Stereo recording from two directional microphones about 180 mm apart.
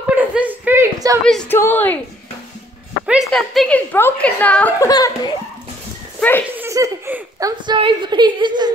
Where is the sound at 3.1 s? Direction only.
Centre (ahead or behind).